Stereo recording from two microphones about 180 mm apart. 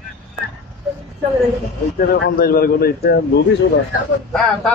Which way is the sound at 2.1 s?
65° left (ahead or behind).